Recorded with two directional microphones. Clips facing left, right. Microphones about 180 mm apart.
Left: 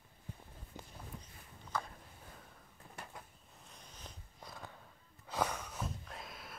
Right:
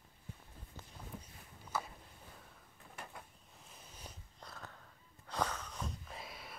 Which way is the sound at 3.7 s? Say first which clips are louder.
Even; 5° right (ahead or behind).